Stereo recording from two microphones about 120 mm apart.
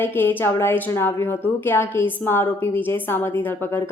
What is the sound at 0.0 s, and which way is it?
A woman's voice, 15° left (ahead or behind).